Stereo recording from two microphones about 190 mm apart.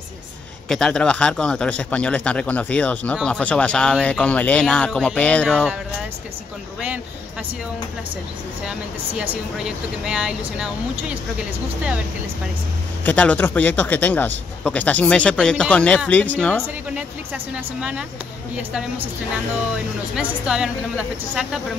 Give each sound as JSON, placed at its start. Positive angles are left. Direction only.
{"t": 0.7, "sound": "a man's voice", "side_deg": 5}
{"t": 9.2, "sound": "a man's voice", "side_deg": -5}
{"t": 13.0, "sound": "speech", "side_deg": 5}
{"t": 16.6, "sound": "a man's voice", "side_deg": -10}
{"t": 20.2, "sound": "a man's voice", "side_deg": -5}